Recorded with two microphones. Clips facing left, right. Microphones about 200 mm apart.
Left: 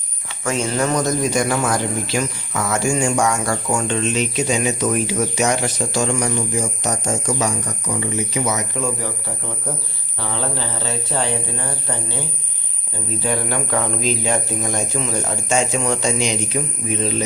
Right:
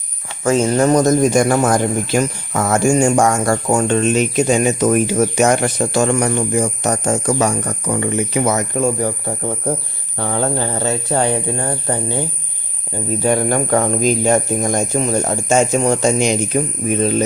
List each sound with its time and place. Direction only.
0.4 s speech: 40° right (ahead or behind)
13.2 s speech: 50° right (ahead or behind)